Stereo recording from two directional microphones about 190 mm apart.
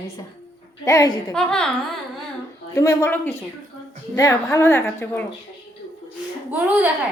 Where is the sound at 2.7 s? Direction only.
15° left (ahead or behind).